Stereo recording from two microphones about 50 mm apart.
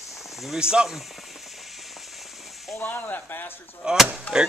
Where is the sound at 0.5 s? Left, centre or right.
Centre.